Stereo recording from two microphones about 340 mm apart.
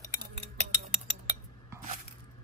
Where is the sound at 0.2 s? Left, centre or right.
Centre.